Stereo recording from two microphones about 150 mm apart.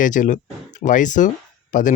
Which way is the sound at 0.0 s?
60° left (ahead or behind).